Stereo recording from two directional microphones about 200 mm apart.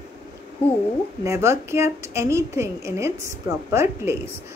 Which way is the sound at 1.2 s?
15° right (ahead or behind).